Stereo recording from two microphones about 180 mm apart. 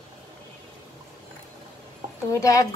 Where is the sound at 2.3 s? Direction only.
20° left (ahead or behind).